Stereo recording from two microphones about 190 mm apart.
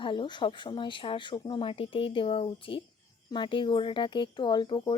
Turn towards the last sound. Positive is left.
turn(degrees=25)  # may be behind; listen again after turning